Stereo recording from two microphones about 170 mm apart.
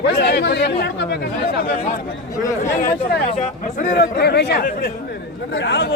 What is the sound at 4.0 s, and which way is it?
Speech, 75° left (ahead or behind).